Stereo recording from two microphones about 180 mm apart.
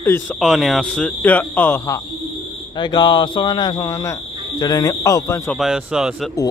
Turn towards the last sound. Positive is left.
turn(degrees=-5)  # may be behind; listen again after turning